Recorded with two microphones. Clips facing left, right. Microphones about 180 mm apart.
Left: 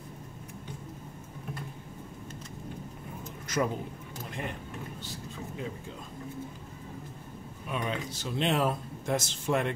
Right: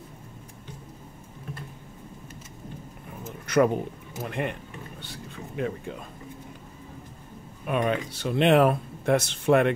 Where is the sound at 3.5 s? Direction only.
60° right (ahead or behind).